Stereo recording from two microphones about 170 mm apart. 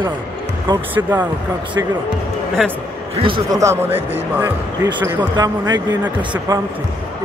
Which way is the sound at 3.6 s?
15° right (ahead or behind).